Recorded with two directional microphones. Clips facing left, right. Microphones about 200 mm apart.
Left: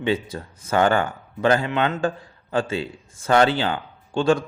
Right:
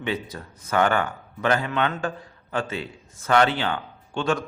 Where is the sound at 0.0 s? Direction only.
30° left (ahead or behind).